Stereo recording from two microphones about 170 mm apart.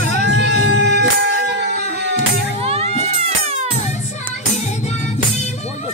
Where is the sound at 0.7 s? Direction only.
85° right.